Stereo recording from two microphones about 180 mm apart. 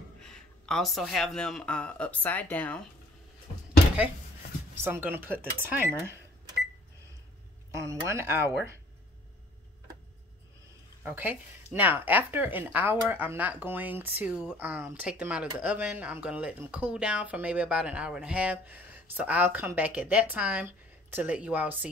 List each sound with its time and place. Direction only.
0.2 s speech: 5° left (ahead or behind)
4.7 s speech: 10° right (ahead or behind)
7.7 s speech: 15° right (ahead or behind)
11.0 s speech: 10° right (ahead or behind)